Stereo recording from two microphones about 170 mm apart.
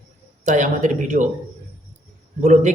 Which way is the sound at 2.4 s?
45° right (ahead or behind).